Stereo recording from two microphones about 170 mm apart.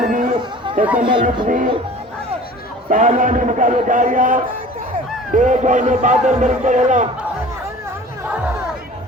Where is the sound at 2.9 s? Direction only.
50° right (ahead or behind).